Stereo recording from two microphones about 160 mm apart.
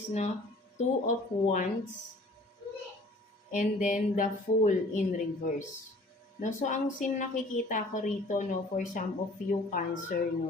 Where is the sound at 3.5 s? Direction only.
55° left (ahead or behind).